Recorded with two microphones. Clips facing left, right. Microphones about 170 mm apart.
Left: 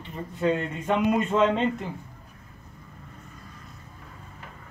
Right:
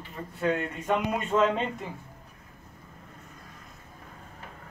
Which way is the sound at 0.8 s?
Centre (ahead or behind).